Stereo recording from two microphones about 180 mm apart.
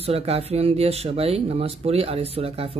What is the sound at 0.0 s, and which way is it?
Speech, 35° right (ahead or behind).